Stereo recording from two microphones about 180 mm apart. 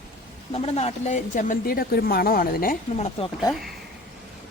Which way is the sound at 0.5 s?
35° left (ahead or behind).